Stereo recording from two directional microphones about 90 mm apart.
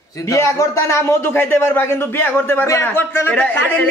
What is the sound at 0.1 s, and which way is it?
Speech, 35° left (ahead or behind).